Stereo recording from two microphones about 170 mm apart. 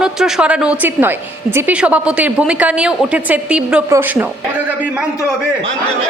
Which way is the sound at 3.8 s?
15° right (ahead or behind).